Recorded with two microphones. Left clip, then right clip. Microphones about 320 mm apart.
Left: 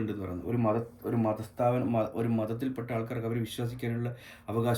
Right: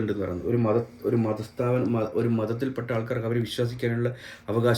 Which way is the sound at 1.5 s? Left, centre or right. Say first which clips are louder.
Right 2 dB; centre.